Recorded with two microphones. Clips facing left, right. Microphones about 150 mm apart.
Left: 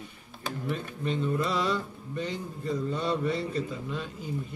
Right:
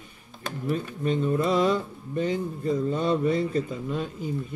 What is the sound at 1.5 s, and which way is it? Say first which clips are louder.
Speech: right 6 dB; 50° right (ahead or behind).